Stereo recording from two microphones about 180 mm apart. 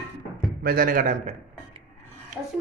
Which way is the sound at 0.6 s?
55° right (ahead or behind).